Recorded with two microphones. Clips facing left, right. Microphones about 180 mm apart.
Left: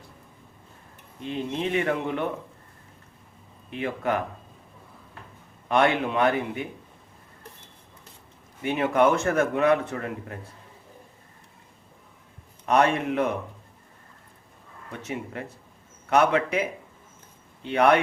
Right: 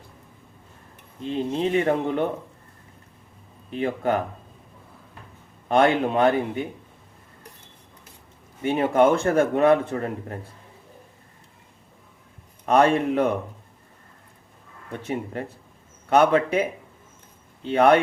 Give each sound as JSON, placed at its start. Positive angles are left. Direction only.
{"t": 1.2, "sound": "speech", "side_deg": -35}
{"t": 3.7, "sound": "speech", "side_deg": -35}
{"t": 5.6, "sound": "speech", "side_deg": -30}
{"t": 8.6, "sound": "speech", "side_deg": -35}
{"t": 12.6, "sound": "speech", "side_deg": -35}
{"t": 15.0, "sound": "speech", "side_deg": -40}